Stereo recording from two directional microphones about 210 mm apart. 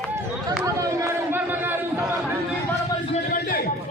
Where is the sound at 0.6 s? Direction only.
15° right (ahead or behind).